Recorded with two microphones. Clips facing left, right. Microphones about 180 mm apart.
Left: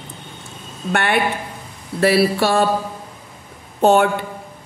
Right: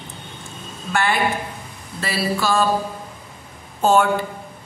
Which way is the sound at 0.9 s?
60° left (ahead or behind).